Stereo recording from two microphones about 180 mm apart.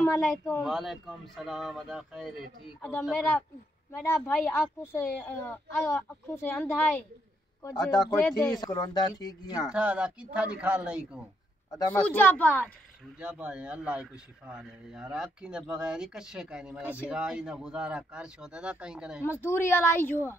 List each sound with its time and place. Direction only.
0.0 s a man's voice: 10° left (ahead or behind)
2.8 s a woman's voice: 10° left (ahead or behind)
8.1 s a woman's voice: 10° left (ahead or behind)
8.5 s speech: 20° left (ahead or behind)
9.7 s speech: 5° right (ahead or behind)
11.7 s a woman's voice: 20° left (ahead or behind)
13.2 s a man's voice: 5° right (ahead or behind)
19.2 s a woman's voice: 10° left (ahead or behind)